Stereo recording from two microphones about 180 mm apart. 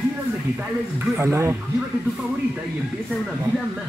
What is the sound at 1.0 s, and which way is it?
Speech, 15° right (ahead or behind).